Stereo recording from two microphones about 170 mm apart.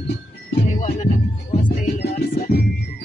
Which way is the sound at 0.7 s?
45° left (ahead or behind).